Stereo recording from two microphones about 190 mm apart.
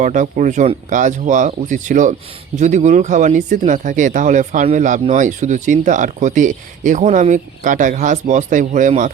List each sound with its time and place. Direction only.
0.0 s speech: 40° right (ahead or behind)